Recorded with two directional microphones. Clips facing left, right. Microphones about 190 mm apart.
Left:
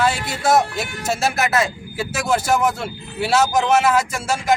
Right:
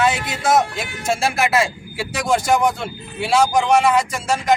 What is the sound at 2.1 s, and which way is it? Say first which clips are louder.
A man's voice: right 2 dB; 5° left (ahead or behind).